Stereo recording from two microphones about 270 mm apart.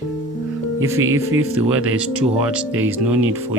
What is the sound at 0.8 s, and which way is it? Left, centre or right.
Speech, centre.